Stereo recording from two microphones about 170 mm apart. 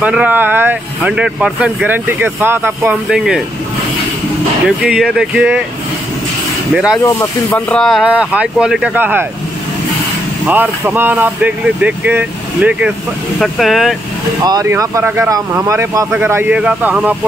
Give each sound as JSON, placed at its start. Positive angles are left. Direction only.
{"t": 0.0, "sound": "speech", "side_deg": -10}
{"t": 4.6, "sound": "speech", "side_deg": -5}
{"t": 6.7, "sound": "speech", "side_deg": -5}
{"t": 7.0, "sound": "speech", "side_deg": 20}
{"t": 10.4, "sound": "speech", "side_deg": -5}
{"t": 14.4, "sound": "speech", "side_deg": -20}